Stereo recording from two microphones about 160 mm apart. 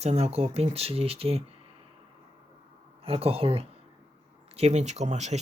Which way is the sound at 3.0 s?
35° right (ahead or behind).